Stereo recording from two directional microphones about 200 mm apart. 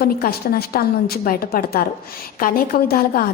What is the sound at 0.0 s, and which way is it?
A woman's voice, 50° left (ahead or behind).